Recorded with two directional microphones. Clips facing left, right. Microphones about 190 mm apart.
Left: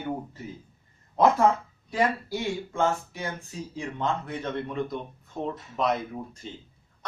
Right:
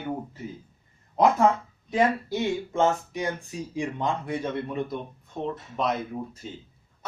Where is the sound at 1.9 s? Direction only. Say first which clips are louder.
Right 3 dB; 20° right (ahead or behind).